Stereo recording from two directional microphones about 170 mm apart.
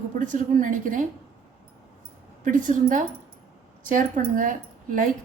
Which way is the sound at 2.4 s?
50° right (ahead or behind).